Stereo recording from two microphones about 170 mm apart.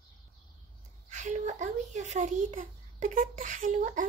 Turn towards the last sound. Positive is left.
turn(degrees=-50)  # may be behind; listen again after turning